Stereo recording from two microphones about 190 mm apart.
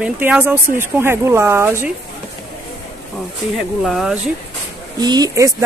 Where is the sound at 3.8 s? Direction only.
Centre (ahead or behind).